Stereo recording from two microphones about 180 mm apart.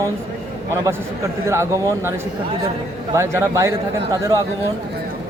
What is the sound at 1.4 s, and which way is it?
Speech, 15° right (ahead or behind).